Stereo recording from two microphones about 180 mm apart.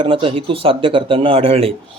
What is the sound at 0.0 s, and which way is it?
Speech, 30° right (ahead or behind).